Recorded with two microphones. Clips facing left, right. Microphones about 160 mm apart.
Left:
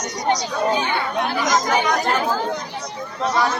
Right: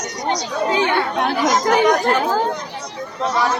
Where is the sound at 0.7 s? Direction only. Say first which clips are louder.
Right 4 dB; 75° right (ahead or behind).